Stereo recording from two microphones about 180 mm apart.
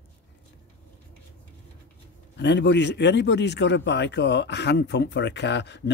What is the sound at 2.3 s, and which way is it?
A man's voice, 80° left.